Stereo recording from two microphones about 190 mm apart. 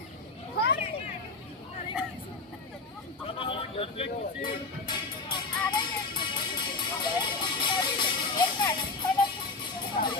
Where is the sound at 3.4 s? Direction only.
30° left (ahead or behind).